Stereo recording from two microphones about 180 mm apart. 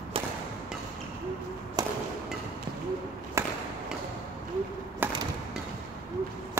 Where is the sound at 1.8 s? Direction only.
20° right (ahead or behind).